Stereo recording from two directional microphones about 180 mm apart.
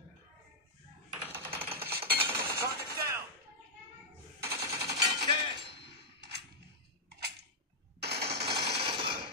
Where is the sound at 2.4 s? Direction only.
55° right (ahead or behind).